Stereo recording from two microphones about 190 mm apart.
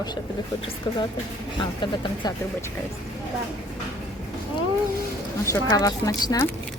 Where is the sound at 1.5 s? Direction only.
25° left (ahead or behind).